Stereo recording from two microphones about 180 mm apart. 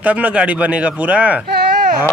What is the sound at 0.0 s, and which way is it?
Speech, 10° right (ahead or behind).